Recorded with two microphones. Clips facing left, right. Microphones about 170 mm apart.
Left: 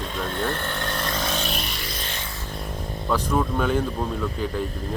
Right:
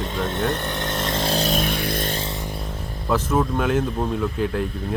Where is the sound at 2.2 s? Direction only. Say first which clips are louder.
Right 6 dB; 20° right (ahead or behind).